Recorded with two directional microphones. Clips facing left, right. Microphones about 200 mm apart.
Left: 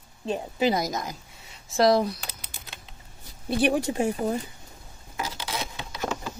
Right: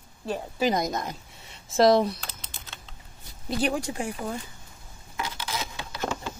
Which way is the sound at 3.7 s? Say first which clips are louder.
Left 5 dB; 20° left (ahead or behind).